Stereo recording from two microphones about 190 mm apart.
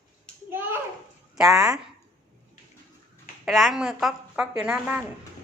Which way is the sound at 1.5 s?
15° right (ahead or behind).